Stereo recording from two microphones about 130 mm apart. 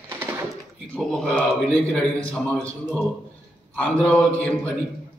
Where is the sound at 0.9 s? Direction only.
5° left (ahead or behind).